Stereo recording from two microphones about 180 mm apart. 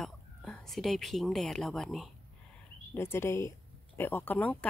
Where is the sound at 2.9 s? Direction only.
15° left (ahead or behind).